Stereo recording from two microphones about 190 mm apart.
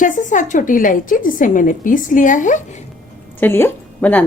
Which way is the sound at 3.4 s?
10° left (ahead or behind).